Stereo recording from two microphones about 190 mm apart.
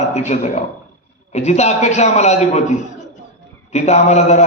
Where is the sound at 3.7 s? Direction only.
35° left (ahead or behind).